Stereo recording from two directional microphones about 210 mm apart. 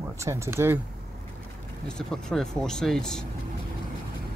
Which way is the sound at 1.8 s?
5° left (ahead or behind).